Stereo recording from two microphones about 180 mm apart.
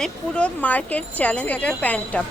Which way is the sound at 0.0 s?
5° left (ahead or behind).